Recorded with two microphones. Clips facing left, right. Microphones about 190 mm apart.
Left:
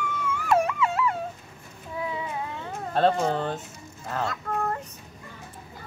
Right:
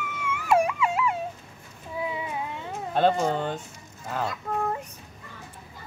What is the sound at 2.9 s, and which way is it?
Speech, centre (ahead or behind).